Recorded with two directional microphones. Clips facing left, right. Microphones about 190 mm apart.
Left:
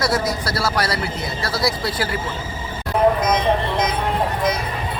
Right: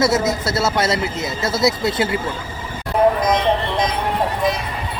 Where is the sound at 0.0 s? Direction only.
25° right (ahead or behind).